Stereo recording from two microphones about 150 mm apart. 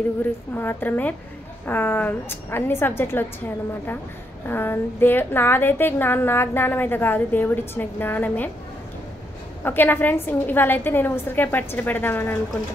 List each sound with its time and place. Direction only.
0.2 s a woman's voice: 15° left (ahead or behind)
9.6 s a woman's voice: 15° left (ahead or behind)